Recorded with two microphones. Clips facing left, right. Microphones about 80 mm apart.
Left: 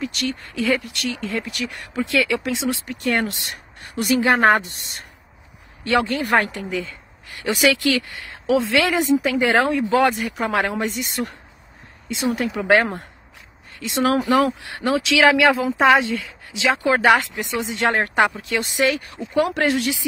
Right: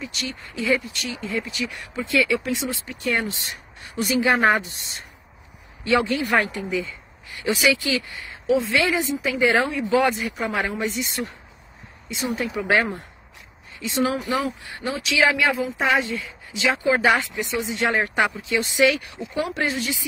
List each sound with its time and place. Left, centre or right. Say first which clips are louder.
0.0 s speech: left 6 dB; left
2.9 s speech: left 1 dB; left
4.0 s speech: left 3 dB; left
13.7 s speech: left 4 dB; left
18.4 s speech: right 1 dB; left
18.9 s speech: even; left
19.3 s speech: left 6 dB; left